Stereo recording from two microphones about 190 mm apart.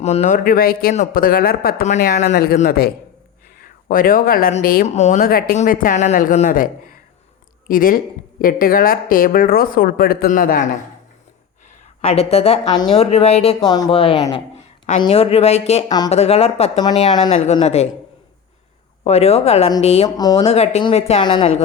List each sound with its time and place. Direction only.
0.0 s speech: 35° left (ahead or behind)
12.0 s speech: 30° left (ahead or behind)
13.7 s a woman's voice: 20° left (ahead or behind)
19.0 s speech: 35° left (ahead or behind)
20.1 s speech: 20° left (ahead or behind)
20.4 s speech: 35° left (ahead or behind)